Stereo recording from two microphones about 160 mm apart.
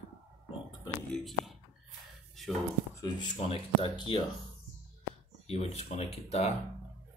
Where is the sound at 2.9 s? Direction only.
25° left (ahead or behind).